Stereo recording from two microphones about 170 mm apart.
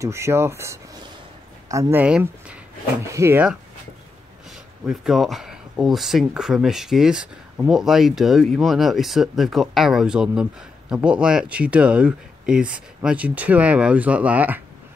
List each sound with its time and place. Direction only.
0.0 s speech: 15° right (ahead or behind)
4.8 s speech: centre (ahead or behind)